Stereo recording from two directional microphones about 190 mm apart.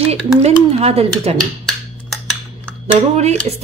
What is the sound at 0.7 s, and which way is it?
Speech, 35° right (ahead or behind).